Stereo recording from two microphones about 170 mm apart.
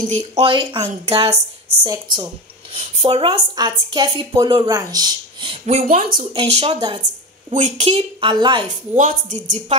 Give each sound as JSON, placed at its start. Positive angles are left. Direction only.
{"t": 0.4, "sound": "a woman's voice", "side_deg": -30}
{"t": 5.9, "sound": "speech", "side_deg": -55}
{"t": 6.3, "sound": "a woman's voice", "side_deg": -35}
{"t": 7.5, "sound": "a woman's voice", "side_deg": -45}
{"t": 8.6, "sound": "speech", "side_deg": -45}